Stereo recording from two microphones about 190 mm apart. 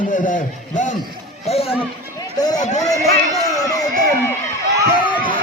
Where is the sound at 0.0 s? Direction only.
45° left (ahead or behind).